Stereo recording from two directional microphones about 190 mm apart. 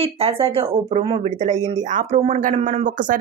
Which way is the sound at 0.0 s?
30° right (ahead or behind).